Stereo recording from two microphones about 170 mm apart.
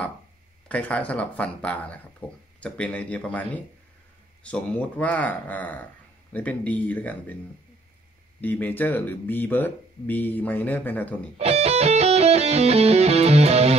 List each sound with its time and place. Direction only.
0.7 s speech: 10° left (ahead or behind)
8.4 s speech: 10° left (ahead or behind)
11.3 s music: 40° right (ahead or behind)